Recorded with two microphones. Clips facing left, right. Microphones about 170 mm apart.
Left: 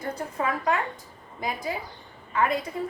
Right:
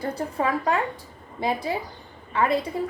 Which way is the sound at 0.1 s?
30° right (ahead or behind).